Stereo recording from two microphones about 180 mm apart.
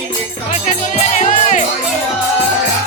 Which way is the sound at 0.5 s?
45° left (ahead or behind).